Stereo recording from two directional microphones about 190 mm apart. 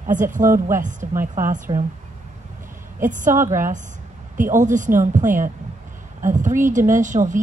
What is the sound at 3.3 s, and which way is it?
Speech, 15° right (ahead or behind).